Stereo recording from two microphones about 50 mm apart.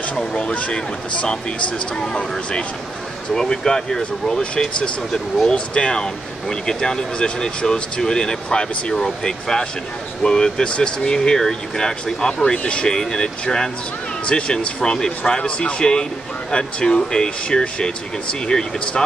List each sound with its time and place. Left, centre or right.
0.2 s speech: centre
0.5 s speech: left